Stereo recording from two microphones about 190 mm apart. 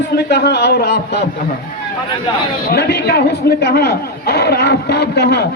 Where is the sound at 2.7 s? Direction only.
60° left (ahead or behind).